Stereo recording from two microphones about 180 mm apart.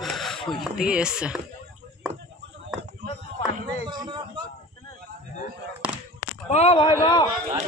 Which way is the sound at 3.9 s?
25° right (ahead or behind).